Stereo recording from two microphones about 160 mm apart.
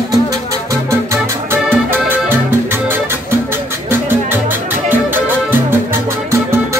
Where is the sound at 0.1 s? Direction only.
20° right (ahead or behind).